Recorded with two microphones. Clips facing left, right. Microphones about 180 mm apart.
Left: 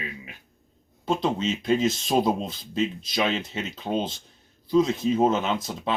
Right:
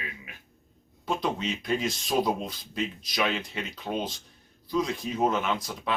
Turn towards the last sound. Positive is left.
turn(degrees=25)  # may be behind; listen again after turning